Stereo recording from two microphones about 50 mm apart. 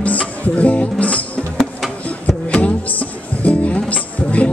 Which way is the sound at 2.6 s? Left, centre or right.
Left.